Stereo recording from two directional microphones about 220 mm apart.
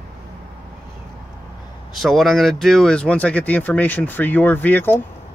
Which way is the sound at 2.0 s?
Centre (ahead or behind).